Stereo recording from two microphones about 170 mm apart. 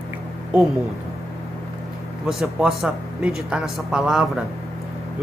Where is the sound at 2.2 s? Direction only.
Centre (ahead or behind).